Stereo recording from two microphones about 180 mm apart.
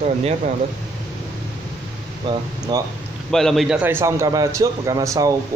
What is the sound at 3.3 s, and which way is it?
A man's voice, centre (ahead or behind).